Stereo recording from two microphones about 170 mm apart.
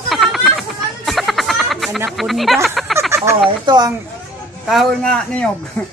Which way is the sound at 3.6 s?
25° right (ahead or behind).